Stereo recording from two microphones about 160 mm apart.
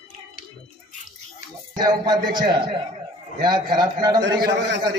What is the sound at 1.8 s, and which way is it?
A man's voice, 25° right (ahead or behind).